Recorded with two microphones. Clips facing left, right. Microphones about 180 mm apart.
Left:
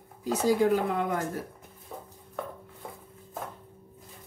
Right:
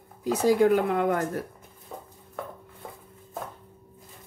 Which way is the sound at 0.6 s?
60° right (ahead or behind).